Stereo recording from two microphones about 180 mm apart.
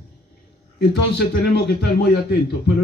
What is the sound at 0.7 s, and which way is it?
A man's voice, 60° left (ahead or behind).